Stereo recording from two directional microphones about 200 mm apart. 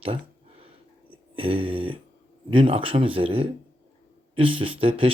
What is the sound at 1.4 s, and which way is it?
Speech, 25° right (ahead or behind).